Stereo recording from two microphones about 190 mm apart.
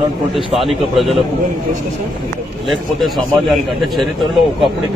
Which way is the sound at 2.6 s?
Centre (ahead or behind).